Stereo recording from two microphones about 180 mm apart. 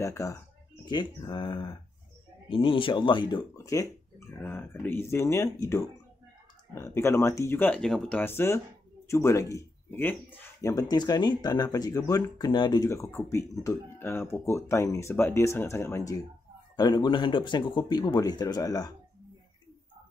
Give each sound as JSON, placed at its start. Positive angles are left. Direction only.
{"t": 0.0, "sound": "speech", "side_deg": 15}